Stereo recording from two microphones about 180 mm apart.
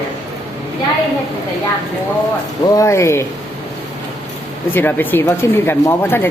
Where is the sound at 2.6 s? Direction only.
20° left (ahead or behind).